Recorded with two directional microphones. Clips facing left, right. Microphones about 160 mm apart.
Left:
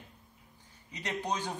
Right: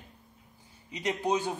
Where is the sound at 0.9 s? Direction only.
10° right (ahead or behind).